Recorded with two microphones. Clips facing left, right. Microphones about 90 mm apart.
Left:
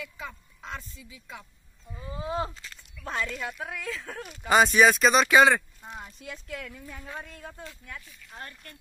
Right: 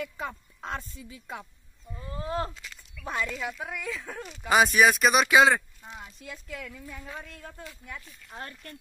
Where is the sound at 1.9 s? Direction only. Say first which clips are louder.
Even; 10° left (ahead or behind).